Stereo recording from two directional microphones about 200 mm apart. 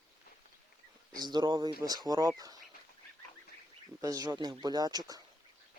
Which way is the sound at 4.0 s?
15° right (ahead or behind).